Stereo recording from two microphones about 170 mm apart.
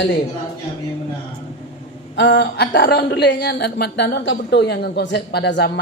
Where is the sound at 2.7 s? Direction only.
75° left (ahead or behind).